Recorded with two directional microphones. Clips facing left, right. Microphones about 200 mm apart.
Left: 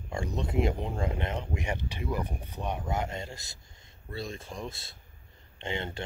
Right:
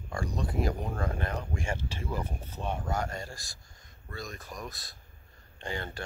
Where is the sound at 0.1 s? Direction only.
25° left (ahead or behind).